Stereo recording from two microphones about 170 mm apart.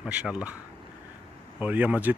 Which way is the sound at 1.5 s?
10° right (ahead or behind).